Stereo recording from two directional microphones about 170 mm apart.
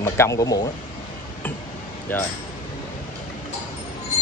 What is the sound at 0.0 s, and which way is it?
Speech, 20° left (ahead or behind).